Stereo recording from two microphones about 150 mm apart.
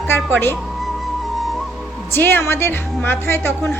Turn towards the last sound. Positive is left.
turn(degrees=15)  # may be behind; listen again after turning